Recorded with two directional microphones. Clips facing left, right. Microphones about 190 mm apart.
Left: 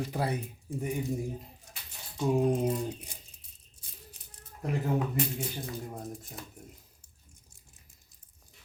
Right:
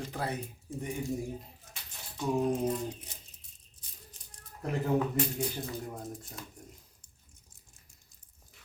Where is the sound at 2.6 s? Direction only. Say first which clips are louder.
Left 2 dB; 10° left (ahead or behind).